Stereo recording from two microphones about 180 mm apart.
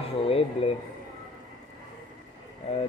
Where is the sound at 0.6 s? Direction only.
30° left (ahead or behind).